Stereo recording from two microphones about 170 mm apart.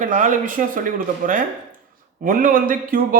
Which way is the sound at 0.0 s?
50° right (ahead or behind).